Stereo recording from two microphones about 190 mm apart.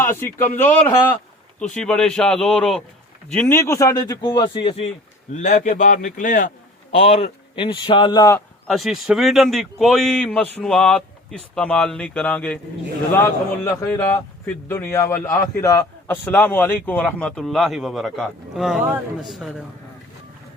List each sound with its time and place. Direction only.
0.0 s a man's voice: 10° left (ahead or behind); by 4.9 s 30° left (ahead or behind)
5.3 s a man's voice: 40° left (ahead or behind)
6.9 s speech: 30° left (ahead or behind)
8.6 s a man's voice: centre (ahead or behind)